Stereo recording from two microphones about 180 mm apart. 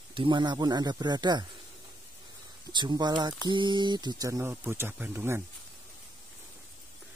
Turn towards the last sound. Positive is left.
turn(degrees=-10)  # may be behind; listen again after turning